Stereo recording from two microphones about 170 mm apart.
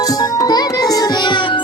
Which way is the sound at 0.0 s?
20° left (ahead or behind).